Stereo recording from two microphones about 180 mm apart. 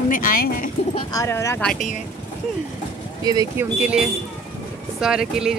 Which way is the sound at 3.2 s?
20° right (ahead or behind).